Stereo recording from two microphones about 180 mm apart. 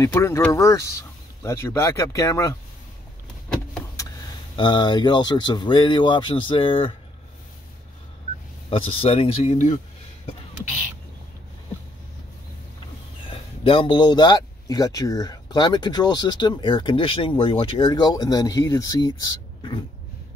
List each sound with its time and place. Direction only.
0.0 s speech: 15° left (ahead or behind)
4.0 s a sound: 15° left (ahead or behind)
4.6 s speech: 25° left (ahead or behind)
8.6 s speech: 30° left (ahead or behind)
13.3 s speech: 30° left (ahead or behind)